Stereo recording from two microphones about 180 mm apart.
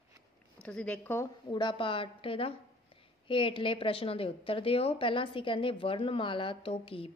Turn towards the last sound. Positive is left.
turn(degrees=30)  # may be behind; listen again after turning